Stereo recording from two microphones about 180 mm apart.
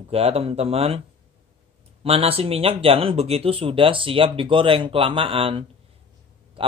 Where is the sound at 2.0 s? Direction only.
30° right (ahead or behind).